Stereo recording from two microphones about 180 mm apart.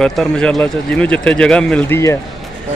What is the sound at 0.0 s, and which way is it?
Speech, centre (ahead or behind).